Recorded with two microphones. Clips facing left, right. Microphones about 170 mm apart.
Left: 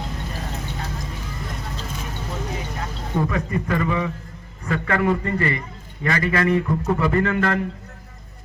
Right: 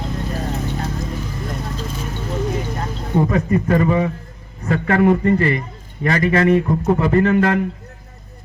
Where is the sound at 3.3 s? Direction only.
35° right (ahead or behind).